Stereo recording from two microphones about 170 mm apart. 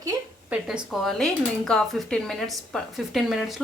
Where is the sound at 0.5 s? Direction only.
5° right (ahead or behind).